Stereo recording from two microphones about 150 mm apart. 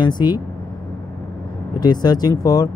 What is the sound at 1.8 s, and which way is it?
Speech, 25° left (ahead or behind).